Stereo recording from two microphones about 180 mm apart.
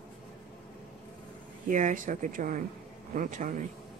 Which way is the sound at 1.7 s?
45° right (ahead or behind).